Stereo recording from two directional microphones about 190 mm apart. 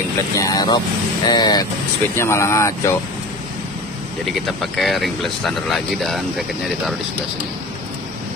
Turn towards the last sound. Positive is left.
turn(degrees=0)  # may be behind; listen again after turning